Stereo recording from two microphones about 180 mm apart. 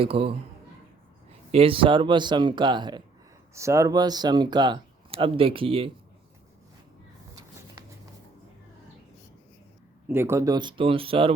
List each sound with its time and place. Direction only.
0.0 s a man's voice: 30° right (ahead or behind)
1.5 s speech: 30° right (ahead or behind)
7.3 s a sound: 20° right (ahead or behind)
10.1 s speech: 15° right (ahead or behind); by 11.3 s 30° right (ahead or behind)